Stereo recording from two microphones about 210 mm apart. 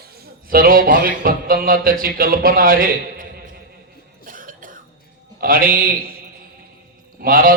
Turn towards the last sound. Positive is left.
turn(degrees=-45)  # may be behind; listen again after turning